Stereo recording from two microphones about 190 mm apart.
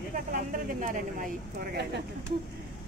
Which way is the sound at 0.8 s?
45° right (ahead or behind).